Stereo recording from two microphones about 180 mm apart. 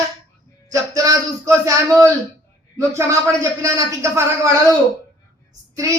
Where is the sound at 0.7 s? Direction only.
20° right (ahead or behind).